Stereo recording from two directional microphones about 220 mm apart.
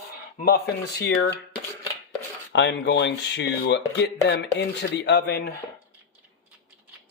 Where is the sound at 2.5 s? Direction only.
55° left (ahead or behind).